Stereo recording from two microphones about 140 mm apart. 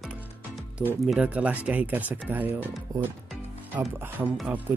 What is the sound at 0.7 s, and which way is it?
Speech, 5° right (ahead or behind).